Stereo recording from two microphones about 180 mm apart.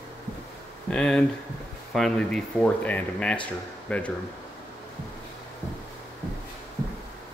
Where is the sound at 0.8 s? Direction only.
5° left (ahead or behind).